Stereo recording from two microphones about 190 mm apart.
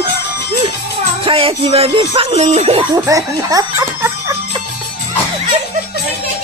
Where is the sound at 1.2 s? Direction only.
30° right (ahead or behind).